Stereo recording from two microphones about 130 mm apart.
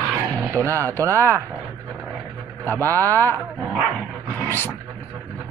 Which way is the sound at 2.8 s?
15° left (ahead or behind).